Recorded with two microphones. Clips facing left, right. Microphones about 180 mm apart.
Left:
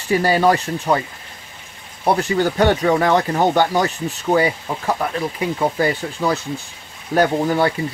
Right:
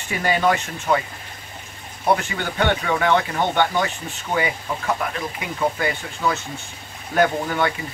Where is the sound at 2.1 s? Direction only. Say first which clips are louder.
Left 8 dB; 35° left (ahead or behind).